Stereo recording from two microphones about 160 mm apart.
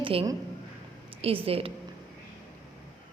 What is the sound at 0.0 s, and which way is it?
A woman's voice, 35° right (ahead or behind).